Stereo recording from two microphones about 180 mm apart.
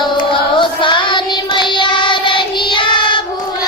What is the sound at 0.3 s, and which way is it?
Child singing, 25° left (ahead or behind).